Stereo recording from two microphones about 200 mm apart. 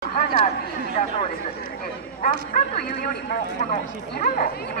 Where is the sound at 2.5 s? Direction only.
50° left (ahead or behind).